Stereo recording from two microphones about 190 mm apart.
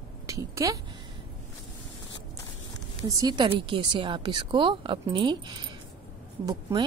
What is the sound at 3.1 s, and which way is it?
Speech, 20° right (ahead or behind).